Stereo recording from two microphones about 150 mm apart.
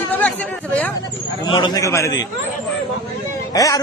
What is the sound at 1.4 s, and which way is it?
Speech, 30° left (ahead or behind).